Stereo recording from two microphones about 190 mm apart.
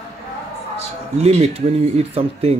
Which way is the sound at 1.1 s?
35° right (ahead or behind).